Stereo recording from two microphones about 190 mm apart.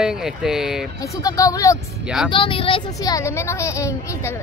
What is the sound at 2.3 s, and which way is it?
Speech, 25° left (ahead or behind).